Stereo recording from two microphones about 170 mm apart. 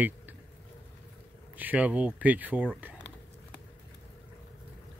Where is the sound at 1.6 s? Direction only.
10° right (ahead or behind).